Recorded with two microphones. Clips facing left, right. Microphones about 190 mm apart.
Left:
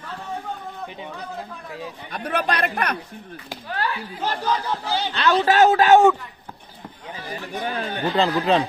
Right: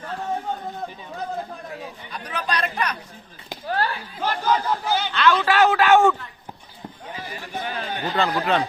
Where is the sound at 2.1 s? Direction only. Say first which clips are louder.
Left 5 dB; 60° left (ahead or behind).